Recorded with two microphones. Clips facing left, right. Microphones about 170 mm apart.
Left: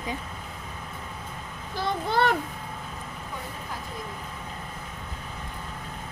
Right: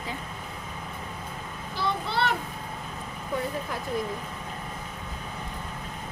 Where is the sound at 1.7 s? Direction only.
45° left (ahead or behind).